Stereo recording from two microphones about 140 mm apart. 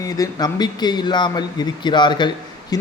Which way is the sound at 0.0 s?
25° left (ahead or behind).